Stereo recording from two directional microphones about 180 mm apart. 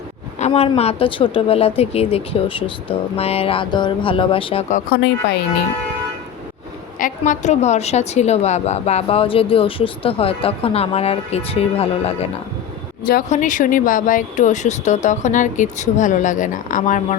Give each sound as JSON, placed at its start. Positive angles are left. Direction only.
{"t": 0.3, "sound": "a woman's voice", "side_deg": 35}
{"t": 4.9, "sound": "speech", "side_deg": 70}
{"t": 7.0, "sound": "a woman's voice", "side_deg": 45}
{"t": 13.3, "sound": "speech", "side_deg": 45}